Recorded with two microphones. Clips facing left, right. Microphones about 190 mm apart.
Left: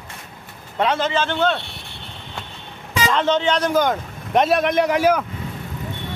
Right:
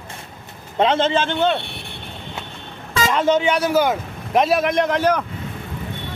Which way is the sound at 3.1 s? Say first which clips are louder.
Right 2 dB; 10° right (ahead or behind).